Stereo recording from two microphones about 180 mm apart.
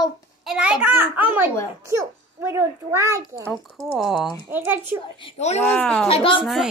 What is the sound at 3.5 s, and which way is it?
Speech, centre (ahead or behind).